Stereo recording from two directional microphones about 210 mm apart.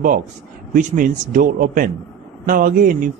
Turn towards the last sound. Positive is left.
turn(degrees=-40)  # may be behind; listen again after turning